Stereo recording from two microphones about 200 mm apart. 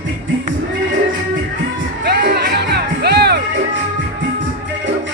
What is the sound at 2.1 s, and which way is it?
Music, 50° right (ahead or behind).